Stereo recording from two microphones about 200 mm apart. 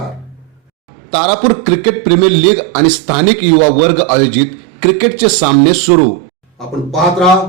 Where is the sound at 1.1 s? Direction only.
25° right (ahead or behind).